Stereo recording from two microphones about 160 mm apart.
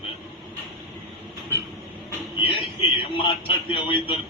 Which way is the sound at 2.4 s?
35° left (ahead or behind).